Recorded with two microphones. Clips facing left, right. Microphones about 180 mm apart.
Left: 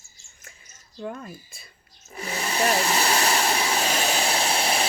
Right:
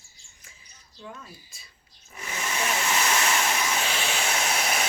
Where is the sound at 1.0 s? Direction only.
55° left (ahead or behind).